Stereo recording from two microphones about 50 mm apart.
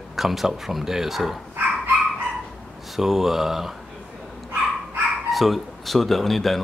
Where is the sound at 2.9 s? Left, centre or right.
Centre.